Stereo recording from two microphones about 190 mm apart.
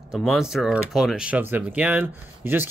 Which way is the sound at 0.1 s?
Centre (ahead or behind).